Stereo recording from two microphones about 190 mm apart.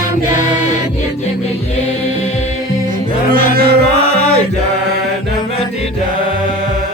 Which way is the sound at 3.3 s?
55° right (ahead or behind).